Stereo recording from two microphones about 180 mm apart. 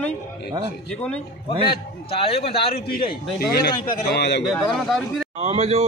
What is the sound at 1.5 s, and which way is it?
A man's voice, 30° left (ahead or behind).